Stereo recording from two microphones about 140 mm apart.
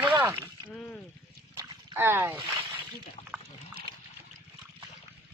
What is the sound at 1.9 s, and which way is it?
Speech, 15° right (ahead or behind).